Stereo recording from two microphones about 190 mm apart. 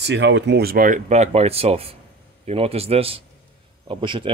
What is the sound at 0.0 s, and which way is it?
A man's voice, 70° right (ahead or behind).